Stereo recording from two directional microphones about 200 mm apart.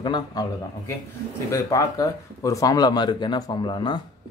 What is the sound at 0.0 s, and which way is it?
Speech, 20° left (ahead or behind).